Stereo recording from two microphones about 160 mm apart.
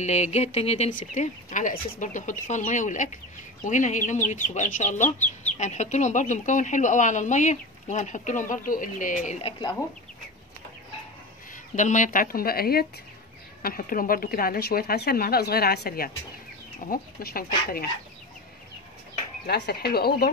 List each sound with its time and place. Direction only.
0.0 s speech: 45° left (ahead or behind)
9.5 s speech: 30° left (ahead or behind)
11.5 s speech: 50° left (ahead or behind); by 17.8 s 70° left (ahead or behind)
19.4 s speech: 85° left